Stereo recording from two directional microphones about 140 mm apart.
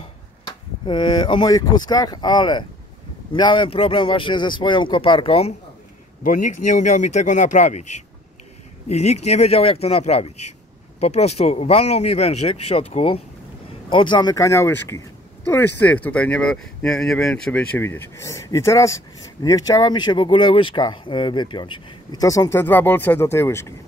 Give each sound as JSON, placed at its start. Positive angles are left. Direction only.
{"t": 0.8, "sound": "speech", "side_deg": 35}
{"t": 6.2, "sound": "speech", "side_deg": 65}
{"t": 22.2, "sound": "speech", "side_deg": 25}